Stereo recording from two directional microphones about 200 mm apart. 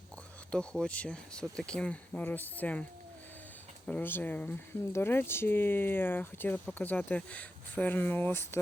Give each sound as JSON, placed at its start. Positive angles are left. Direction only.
{"t": 0.5, "sound": "speech", "side_deg": 5}
{"t": 3.8, "sound": "speech", "side_deg": 10}